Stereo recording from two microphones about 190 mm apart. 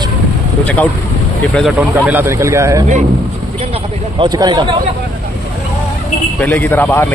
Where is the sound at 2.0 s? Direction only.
10° right (ahead or behind).